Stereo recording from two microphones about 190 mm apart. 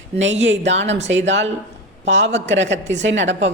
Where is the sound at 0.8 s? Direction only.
70° right (ahead or behind).